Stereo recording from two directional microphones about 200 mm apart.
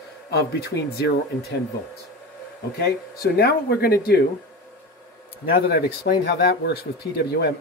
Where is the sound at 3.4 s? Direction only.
50° left (ahead or behind).